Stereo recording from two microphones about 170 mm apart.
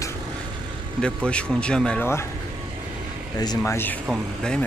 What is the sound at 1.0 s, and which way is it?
Speech, 5° left (ahead or behind).